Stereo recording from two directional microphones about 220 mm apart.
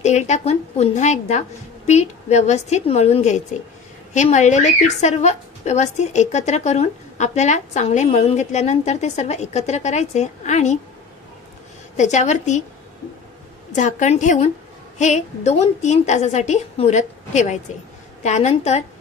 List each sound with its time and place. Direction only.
0.0 s a woman's voice: 30° left (ahead or behind)
12.0 s a woman's voice: 30° left (ahead or behind)
13.7 s a woman's voice: 35° left (ahead or behind)